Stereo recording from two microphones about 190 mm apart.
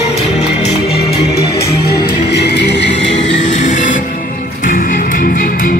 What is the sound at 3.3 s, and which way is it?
Music, 40° left (ahead or behind).